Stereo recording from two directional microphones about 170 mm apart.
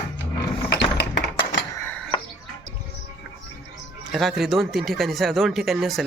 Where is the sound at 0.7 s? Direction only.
90° left.